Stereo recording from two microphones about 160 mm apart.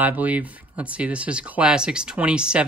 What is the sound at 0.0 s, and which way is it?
Speech, 10° right (ahead or behind).